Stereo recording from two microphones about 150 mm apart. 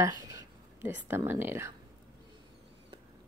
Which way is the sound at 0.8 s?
10° right (ahead or behind).